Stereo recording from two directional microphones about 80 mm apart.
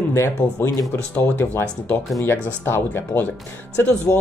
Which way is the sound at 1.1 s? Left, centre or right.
Left.